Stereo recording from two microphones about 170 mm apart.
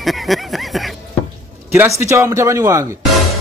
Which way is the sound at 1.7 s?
15° right (ahead or behind).